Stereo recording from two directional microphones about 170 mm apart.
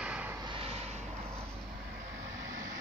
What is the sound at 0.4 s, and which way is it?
Vehicle, 30° right (ahead or behind).